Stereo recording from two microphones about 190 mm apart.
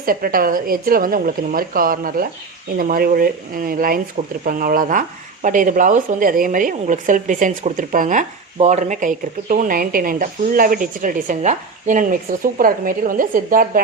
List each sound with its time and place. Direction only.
0.0 s speech: 50° right (ahead or behind)